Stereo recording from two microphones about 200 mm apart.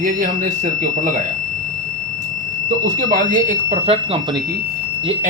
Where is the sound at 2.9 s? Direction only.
40° right (ahead or behind).